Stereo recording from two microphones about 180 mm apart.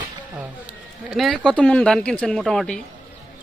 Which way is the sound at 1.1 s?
Centre (ahead or behind).